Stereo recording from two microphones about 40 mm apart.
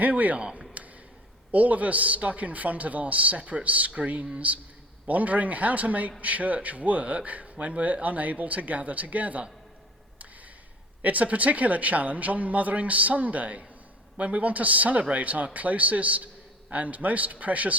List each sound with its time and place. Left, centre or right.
0.0 s a man's voice: right
0.3 s speech: right
1.5 s a man's voice: right
11.0 s a man's voice: right